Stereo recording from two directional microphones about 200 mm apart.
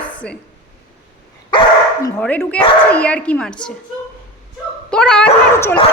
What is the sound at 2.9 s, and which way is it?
Speech, 5° left (ahead or behind).